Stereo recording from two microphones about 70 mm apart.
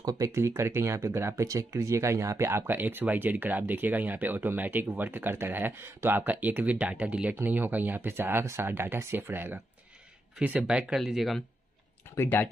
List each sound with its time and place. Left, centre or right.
0.3 s speech: right
10.4 s speech: centre
11.0 s speech: centre
12.2 s speech: left